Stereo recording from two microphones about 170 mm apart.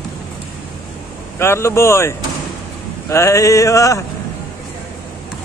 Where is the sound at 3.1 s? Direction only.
20° left (ahead or behind).